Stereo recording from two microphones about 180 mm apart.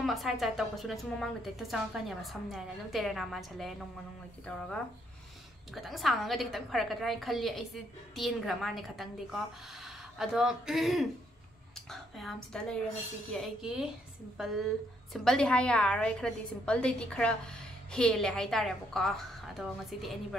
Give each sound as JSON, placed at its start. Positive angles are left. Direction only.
{"t": 0.0, "sound": "a woman's voice", "side_deg": 0}
{"t": 5.8, "sound": "a woman's voice", "side_deg": 0}